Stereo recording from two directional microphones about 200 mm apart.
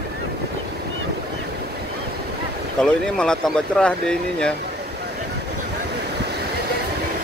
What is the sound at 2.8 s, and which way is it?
Speech, 5° left (ahead or behind).